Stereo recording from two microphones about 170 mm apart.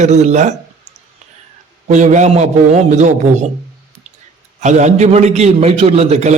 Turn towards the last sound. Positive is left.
turn(degrees=-40)  # may be behind; listen again after turning